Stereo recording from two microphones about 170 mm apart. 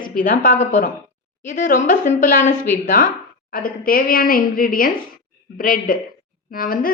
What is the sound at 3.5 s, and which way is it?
A woman's voice, 55° left (ahead or behind).